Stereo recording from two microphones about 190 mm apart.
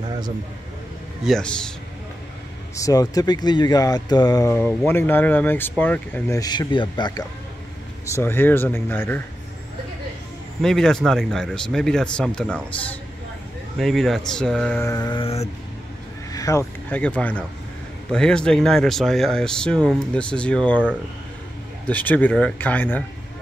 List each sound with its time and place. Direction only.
1.2 s speech: 5° left (ahead or behind)
2.7 s speech: 20° left (ahead or behind)
8.1 s speech: 10° left (ahead or behind)
10.6 s speech: 5° left (ahead or behind)
13.7 s speech: centre (ahead or behind); by 15.5 s 30° left (ahead or behind)
16.3 s speech: 15° left (ahead or behind)
21.8 s speech: 10° left (ahead or behind)